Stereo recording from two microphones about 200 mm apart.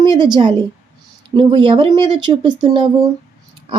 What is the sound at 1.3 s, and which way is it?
Speech, 25° right (ahead or behind).